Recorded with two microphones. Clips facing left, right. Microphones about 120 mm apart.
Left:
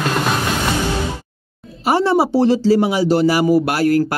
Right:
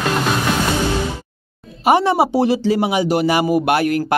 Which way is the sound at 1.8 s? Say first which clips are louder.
Right 1 dB; 15° right (ahead or behind).